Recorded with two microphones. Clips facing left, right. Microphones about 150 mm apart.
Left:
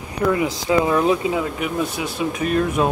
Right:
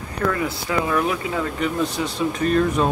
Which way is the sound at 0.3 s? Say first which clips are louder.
Left 8 dB; 20° left (ahead or behind).